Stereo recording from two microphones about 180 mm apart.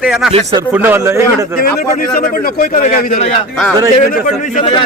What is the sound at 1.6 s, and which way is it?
A man's voice, 55° left (ahead or behind).